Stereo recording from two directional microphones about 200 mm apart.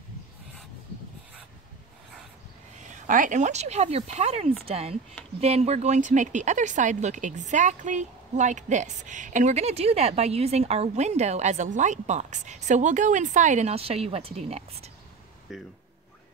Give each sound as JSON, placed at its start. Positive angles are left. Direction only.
{"t": 3.1, "sound": "speech", "side_deg": -40}
{"t": 15.5, "sound": "speech", "side_deg": 0}